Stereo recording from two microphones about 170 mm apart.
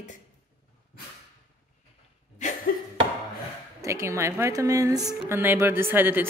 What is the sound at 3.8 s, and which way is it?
Speech, 15° right (ahead or behind).